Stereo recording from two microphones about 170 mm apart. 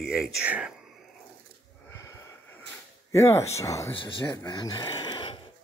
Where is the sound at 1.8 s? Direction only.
15° left (ahead or behind).